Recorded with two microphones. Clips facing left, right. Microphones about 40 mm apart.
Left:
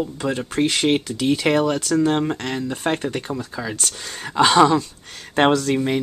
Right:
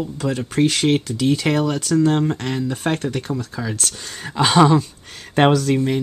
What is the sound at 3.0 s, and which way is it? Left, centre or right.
Speech, centre.